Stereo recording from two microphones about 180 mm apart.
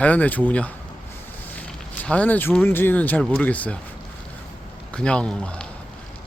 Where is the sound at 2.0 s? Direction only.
10° left (ahead or behind).